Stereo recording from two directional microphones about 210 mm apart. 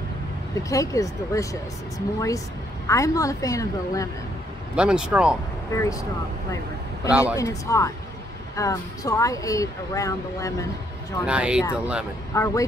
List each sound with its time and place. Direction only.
0.7 s speech: 15° left (ahead or behind)
4.7 s speech: 5° right (ahead or behind)
5.8 s speech: 15° left (ahead or behind)
7.1 s speech: 5° right (ahead or behind)
7.3 s speech: 15° left (ahead or behind)
11.2 s speech: 5° right (ahead or behind)
12.3 s speech: 15° left (ahead or behind)